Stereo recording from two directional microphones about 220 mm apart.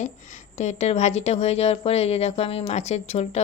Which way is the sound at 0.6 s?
30° left (ahead or behind).